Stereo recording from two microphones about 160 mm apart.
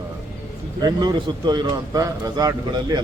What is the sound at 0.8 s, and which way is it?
A man's voice, 25° right (ahead or behind).